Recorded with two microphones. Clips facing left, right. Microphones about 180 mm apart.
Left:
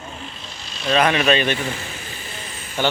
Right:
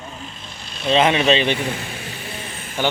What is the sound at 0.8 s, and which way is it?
Speech, 25° right (ahead or behind).